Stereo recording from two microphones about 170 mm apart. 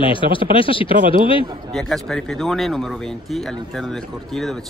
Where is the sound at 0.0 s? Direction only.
30° left (ahead or behind).